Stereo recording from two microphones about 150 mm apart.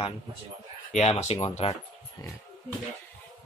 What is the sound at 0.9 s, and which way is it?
Speech, 45° left (ahead or behind).